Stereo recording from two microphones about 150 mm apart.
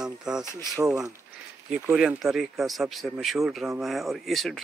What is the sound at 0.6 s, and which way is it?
Speech, 20° right (ahead or behind).